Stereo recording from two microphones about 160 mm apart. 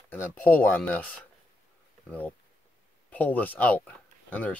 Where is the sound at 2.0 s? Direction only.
10° left (ahead or behind).